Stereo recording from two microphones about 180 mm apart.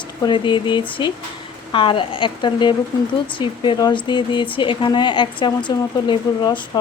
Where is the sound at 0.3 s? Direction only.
25° left (ahead or behind).